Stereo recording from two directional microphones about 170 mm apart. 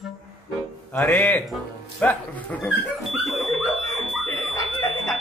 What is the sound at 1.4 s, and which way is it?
Music, centre (ahead or behind).